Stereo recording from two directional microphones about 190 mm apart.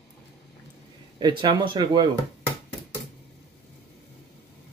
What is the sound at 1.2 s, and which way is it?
Speech, 25° right (ahead or behind).